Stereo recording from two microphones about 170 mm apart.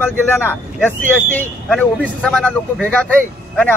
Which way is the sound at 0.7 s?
10° left (ahead or behind).